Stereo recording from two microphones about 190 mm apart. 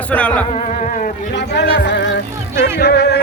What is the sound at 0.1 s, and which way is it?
Speech, 5° left (ahead or behind).